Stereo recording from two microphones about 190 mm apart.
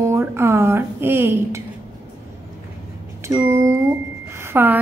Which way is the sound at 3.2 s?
15° right (ahead or behind).